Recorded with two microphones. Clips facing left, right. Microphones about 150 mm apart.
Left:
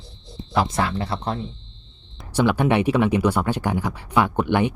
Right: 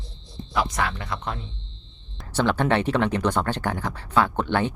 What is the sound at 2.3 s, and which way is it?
Speech, 10° left (ahead or behind).